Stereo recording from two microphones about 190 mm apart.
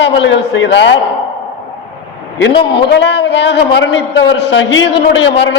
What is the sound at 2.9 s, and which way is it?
A man's voice, 65° left (ahead or behind).